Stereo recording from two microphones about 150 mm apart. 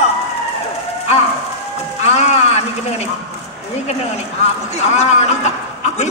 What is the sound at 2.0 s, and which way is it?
Music, 45° left (ahead or behind).